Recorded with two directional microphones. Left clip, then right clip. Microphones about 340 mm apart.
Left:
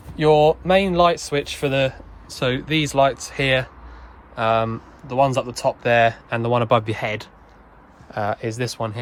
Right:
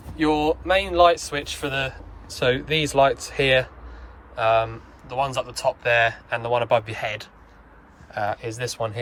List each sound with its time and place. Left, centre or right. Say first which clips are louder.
0.2 s speech: left 6 dB; left